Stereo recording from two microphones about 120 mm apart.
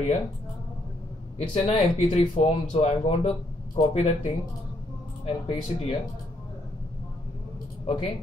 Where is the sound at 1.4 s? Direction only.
55° left (ahead or behind).